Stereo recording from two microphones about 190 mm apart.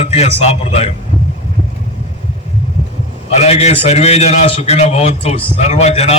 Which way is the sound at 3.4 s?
35° left (ahead or behind).